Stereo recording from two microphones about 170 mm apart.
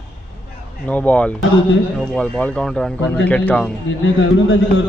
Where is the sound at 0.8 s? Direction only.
10° left (ahead or behind).